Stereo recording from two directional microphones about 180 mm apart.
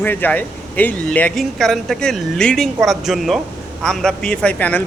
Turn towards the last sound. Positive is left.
turn(degrees=10)  # may be behind; listen again after turning